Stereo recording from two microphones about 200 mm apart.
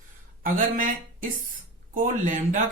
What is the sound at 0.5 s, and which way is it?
Speech, 40° right (ahead or behind).